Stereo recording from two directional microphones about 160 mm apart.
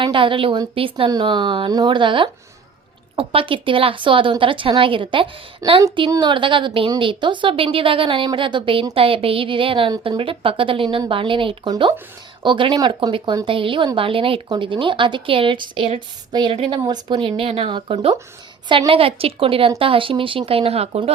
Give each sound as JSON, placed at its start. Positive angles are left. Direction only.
{"t": 0.0, "sound": "a woman's voice", "side_deg": -30}
{"t": 5.6, "sound": "a woman's voice", "side_deg": -20}